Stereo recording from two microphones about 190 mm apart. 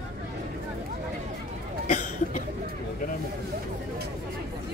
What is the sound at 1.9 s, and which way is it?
Cough, 40° left (ahead or behind).